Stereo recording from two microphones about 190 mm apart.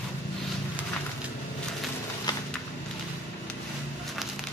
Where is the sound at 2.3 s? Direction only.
20° left (ahead or behind).